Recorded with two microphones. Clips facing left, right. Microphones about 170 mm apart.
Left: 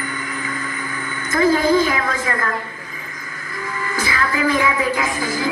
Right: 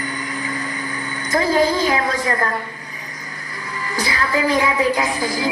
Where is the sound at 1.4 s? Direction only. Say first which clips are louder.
Left 3 dB; 50° left (ahead or behind).